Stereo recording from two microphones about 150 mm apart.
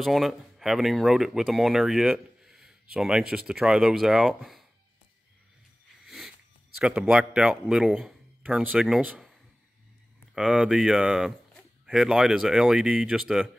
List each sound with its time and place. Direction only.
0.0 s speech: centre (ahead or behind)
6.0 s wheeze: centre (ahead or behind)
6.8 s a man's voice: 5° right (ahead or behind)